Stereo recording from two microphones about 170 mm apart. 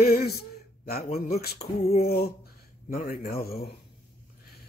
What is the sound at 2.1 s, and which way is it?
Speech, 65° left (ahead or behind).